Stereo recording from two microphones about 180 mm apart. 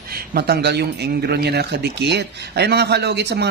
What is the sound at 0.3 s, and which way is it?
Speech, 60° right (ahead or behind).